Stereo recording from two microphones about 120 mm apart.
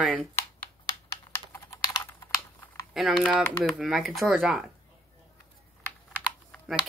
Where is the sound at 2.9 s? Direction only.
Centre (ahead or behind).